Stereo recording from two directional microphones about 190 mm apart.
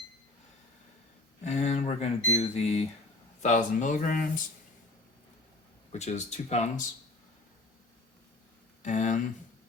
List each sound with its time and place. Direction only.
1.5 s speech: 35° left (ahead or behind)
5.9 s speech: 35° left (ahead or behind)
8.8 s speech: 40° left (ahead or behind)